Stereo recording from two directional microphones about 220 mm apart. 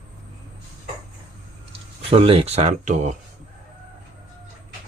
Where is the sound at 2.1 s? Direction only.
25° right (ahead or behind).